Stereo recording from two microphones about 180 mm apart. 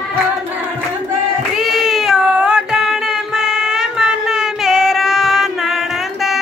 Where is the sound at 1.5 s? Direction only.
Centre (ahead or behind).